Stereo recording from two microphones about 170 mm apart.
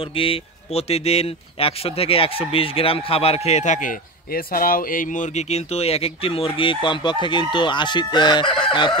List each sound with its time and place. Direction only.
0.1 s speech: 35° left (ahead or behind)